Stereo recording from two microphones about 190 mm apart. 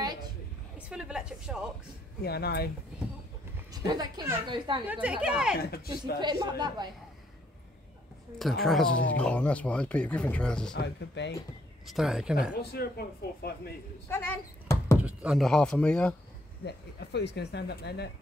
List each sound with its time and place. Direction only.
0.7 s a woman's voice: 5° right (ahead or behind)
2.2 s speech: 55° left (ahead or behind)
3.7 s a woman's voice: 20° right (ahead or behind)
4.8 s a woman's voice: 5° right (ahead or behind)
5.6 s speech: 55° left (ahead or behind)
6.1 s a woman's voice: 20° right (ahead or behind)
8.6 s speech: 5° left (ahead or behind)
10.8 s speech: 65° left (ahead or behind)
11.8 s a woman's voice: centre (ahead or behind)
12.7 s speech: 55° left (ahead or behind)
14.0 s a sound: 10° left (ahead or behind)
15.0 s speech: 5° right (ahead or behind)
16.6 s speech: 65° left (ahead or behind)